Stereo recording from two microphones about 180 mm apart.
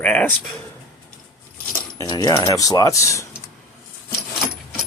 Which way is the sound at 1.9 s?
20° left (ahead or behind).